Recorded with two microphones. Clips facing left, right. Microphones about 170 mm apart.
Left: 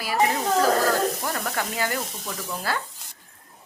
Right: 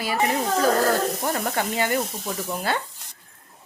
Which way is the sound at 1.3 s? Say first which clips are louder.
Right 3 dB; 25° right (ahead or behind).